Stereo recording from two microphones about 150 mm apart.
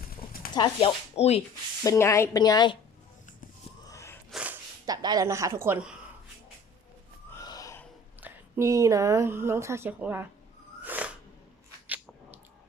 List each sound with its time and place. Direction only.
0.5 s a woman's voice: 30° left (ahead or behind)
1.1 s speech: 45° left (ahead or behind)
1.8 s a woman's voice: 20° left (ahead or behind)
3.8 s a sound: 20° left (ahead or behind)
4.3 s gasp: 10° right (ahead or behind)
4.9 s speech: 25° right (ahead or behind); by 6.0 s 10° right (ahead or behind)
7.3 s gasp: 20° left (ahead or behind)
8.2 s speech: 15° right (ahead or behind)
10.8 s a sound: 10° right (ahead or behind)